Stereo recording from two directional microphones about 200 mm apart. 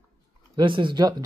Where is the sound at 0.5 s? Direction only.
25° right (ahead or behind).